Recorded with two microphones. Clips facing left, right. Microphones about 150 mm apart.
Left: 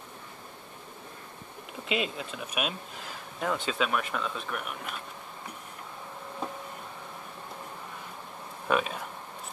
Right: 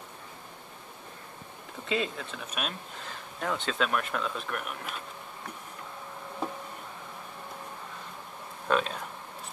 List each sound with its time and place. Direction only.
1.9 s speech: 15° left (ahead or behind); by 4.9 s centre (ahead or behind)
8.6 s speech: 10° left (ahead or behind)